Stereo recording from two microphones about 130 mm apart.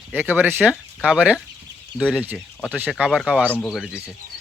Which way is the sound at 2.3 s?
10° left (ahead or behind).